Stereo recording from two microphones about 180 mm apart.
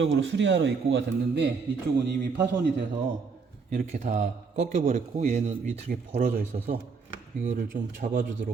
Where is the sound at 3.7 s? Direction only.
45° right (ahead or behind).